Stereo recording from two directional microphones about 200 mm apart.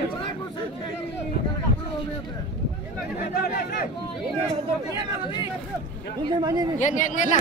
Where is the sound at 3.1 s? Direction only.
50° left (ahead or behind).